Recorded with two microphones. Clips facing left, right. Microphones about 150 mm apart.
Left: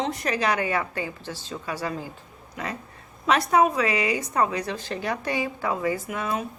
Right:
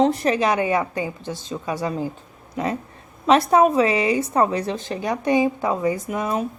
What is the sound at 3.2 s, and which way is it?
A woman's voice, 30° right (ahead or behind).